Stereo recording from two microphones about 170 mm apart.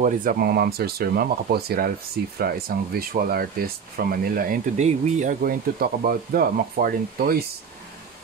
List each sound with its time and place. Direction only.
0.0 s speech: 55° right (ahead or behind)
4.7 s speech: 40° right (ahead or behind)
5.4 s speech: 60° right (ahead or behind)